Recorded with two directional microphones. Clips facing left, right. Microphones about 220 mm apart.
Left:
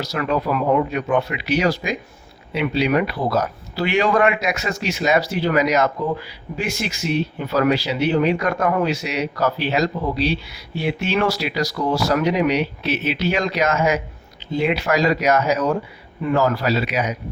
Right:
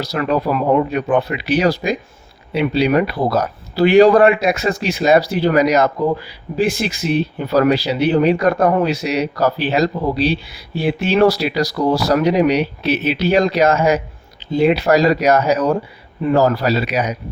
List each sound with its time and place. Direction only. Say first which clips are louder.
0.0 s speech: right 4 dB; 35° right (ahead or behind)